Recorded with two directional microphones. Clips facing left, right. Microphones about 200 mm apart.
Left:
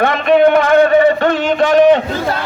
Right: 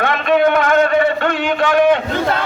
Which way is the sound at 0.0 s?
25° left (ahead or behind).